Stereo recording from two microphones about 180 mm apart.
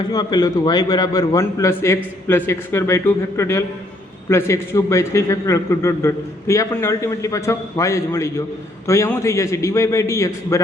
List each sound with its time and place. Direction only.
0.1 s a man's voice: 20° left (ahead or behind)